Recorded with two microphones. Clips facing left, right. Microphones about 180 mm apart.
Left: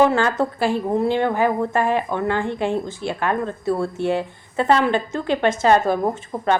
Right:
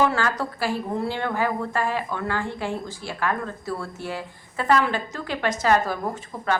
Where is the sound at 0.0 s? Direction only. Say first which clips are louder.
Left 6 dB; 25° left (ahead or behind).